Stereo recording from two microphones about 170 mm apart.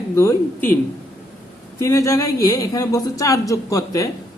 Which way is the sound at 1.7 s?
15° left (ahead or behind).